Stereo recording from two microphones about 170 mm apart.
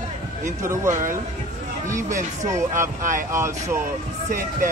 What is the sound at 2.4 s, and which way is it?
Speech, 15° right (ahead or behind).